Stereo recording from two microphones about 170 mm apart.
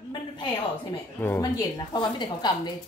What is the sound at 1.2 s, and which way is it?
Speech, 15° left (ahead or behind).